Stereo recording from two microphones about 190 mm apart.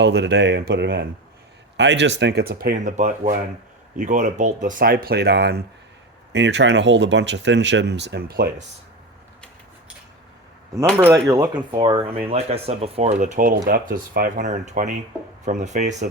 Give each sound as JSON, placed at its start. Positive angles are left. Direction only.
{"t": 0.0, "sound": "speech", "side_deg": -65}
{"t": 10.9, "sound": "speech", "side_deg": -15}